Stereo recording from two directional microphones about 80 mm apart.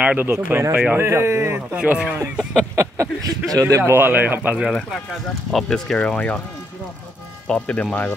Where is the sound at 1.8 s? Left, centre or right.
Centre.